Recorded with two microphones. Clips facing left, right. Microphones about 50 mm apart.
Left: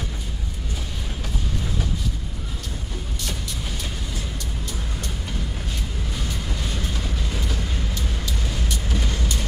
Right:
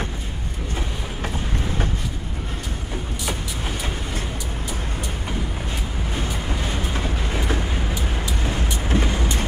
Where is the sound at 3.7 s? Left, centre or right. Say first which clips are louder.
Right 4 dB; right.